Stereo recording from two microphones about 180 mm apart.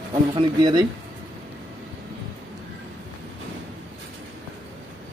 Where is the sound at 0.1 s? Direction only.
25° right (ahead or behind).